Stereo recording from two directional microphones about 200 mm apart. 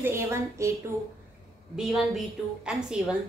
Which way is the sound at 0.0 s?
15° right (ahead or behind).